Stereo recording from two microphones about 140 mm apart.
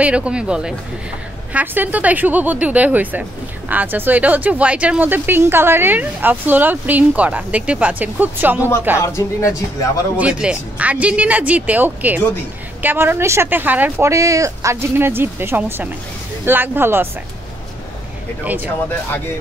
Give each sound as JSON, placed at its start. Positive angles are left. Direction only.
{"t": 0.0, "sound": "speech", "side_deg": -10}
{"t": 9.0, "sound": "speech", "side_deg": 20}
{"t": 10.1, "sound": "speech", "side_deg": -10}
{"t": 18.4, "sound": "speech", "side_deg": -10}